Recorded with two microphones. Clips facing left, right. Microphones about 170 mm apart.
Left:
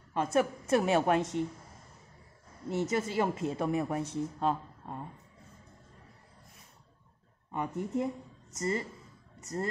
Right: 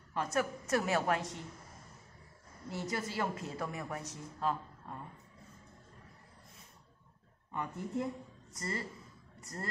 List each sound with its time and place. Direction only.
0.1 s a woman's voice: 25° left (ahead or behind)
2.7 s a woman's voice: 25° left (ahead or behind)
7.5 s a woman's voice: 20° left (ahead or behind)